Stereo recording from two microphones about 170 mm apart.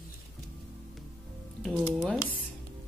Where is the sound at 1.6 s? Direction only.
5° left (ahead or behind).